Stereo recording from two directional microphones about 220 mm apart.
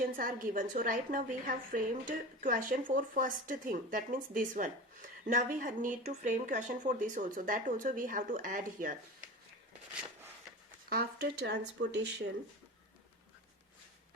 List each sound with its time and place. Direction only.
0.0 s a woman's voice: 40° right (ahead or behind)
10.8 s speech: 45° right (ahead or behind)